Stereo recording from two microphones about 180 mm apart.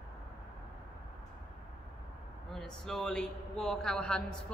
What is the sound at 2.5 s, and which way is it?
A man's voice, centre (ahead or behind).